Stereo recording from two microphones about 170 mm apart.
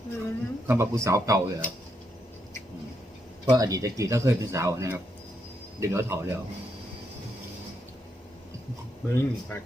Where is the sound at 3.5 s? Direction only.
20° right (ahead or behind).